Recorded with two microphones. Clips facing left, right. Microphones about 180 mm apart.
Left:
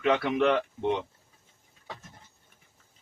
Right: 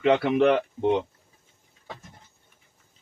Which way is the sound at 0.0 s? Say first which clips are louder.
Right 4 dB; 25° right (ahead or behind).